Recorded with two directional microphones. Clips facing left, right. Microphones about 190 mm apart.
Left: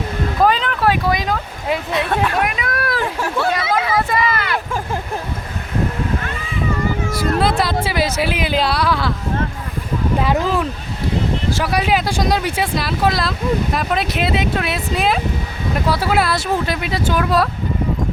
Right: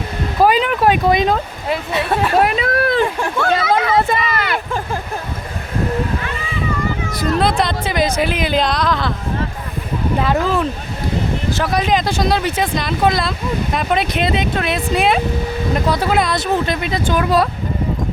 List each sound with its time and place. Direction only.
0.4 s a sound: 10° right (ahead or behind)
1.9 s speech: 5° right (ahead or behind)
2.3 s speech: 30° right (ahead or behind)
3.2 s speech: 5° left (ahead or behind)
3.9 s a sound: 25° right (ahead or behind)
7.1 s speech: 5° left (ahead or behind)
10.2 s speech: 10° left (ahead or behind)